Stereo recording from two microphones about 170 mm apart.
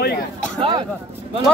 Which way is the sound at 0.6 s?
25° right (ahead or behind).